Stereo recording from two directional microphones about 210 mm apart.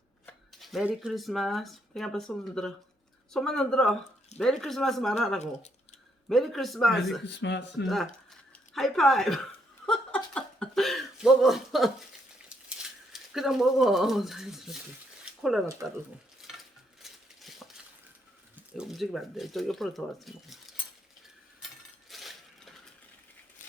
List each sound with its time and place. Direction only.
0.3 s speech: centre (ahead or behind)
7.3 s speech: 55° left (ahead or behind)
7.9 s speech: centre (ahead or behind)
9.8 s a sound: 5° left (ahead or behind)
12.6 s speech: centre (ahead or behind)
15.2 s a sound: centre (ahead or behind)
17.6 s a sound: centre (ahead or behind)
18.5 s speech: centre (ahead or behind)
22.1 s coin: centre (ahead or behind)